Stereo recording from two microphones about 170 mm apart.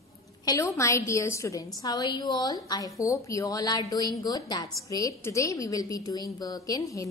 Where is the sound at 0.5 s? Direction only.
20° left (ahead or behind).